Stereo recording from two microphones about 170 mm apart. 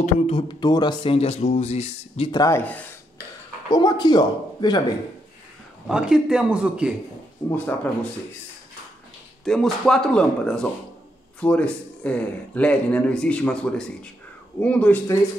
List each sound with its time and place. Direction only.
0.0 s speech: 30° left (ahead or behind)
2.4 s a man's voice: 10° left (ahead or behind)
3.7 s a man's voice: 25° left (ahead or behind)
5.9 s speech: 5° right (ahead or behind)
7.5 s a man's voice: 10° left (ahead or behind)
9.4 s a man's voice: centre (ahead or behind)